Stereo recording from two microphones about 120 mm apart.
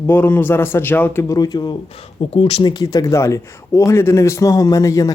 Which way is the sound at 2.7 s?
30° left (ahead or behind).